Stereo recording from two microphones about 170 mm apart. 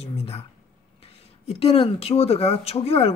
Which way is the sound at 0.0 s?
35° left (ahead or behind).